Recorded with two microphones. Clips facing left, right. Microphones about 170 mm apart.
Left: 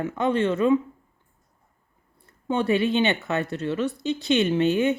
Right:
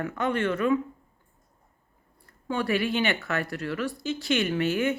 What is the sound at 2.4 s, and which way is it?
Speech, 25° left (ahead or behind).